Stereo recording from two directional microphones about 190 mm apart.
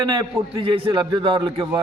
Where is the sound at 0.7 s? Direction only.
25° right (ahead or behind).